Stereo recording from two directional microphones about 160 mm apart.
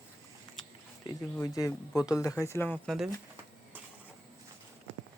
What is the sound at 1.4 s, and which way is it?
Speech, 20° left (ahead or behind).